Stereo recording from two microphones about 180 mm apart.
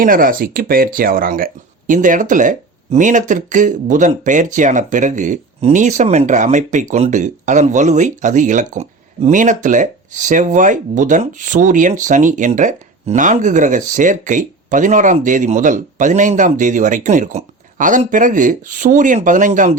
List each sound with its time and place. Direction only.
0.0 s speech: 50° right (ahead or behind)